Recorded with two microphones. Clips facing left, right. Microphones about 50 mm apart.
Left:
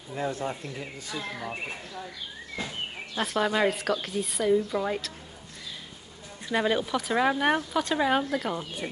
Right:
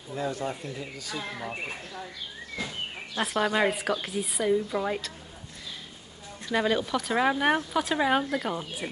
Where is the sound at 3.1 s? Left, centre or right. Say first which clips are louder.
Even; centre.